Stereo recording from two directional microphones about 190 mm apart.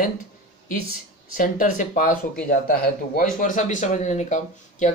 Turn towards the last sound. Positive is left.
turn(degrees=40)  # may be behind; listen again after turning